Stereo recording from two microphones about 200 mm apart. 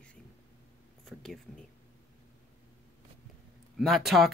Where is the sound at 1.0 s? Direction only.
Centre (ahead or behind).